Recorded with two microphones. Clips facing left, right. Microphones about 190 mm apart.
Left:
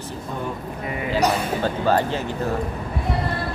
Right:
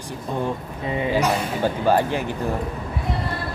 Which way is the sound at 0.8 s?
25° right (ahead or behind).